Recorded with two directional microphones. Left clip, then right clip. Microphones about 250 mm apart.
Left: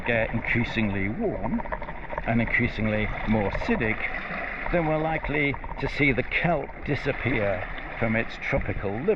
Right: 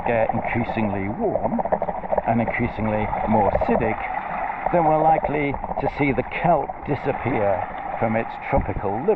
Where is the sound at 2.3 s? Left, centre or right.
Centre.